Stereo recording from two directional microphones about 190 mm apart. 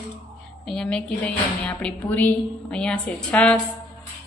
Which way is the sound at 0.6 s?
5° left (ahead or behind).